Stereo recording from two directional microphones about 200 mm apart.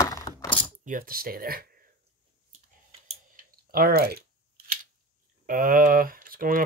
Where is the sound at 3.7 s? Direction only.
50° right (ahead or behind).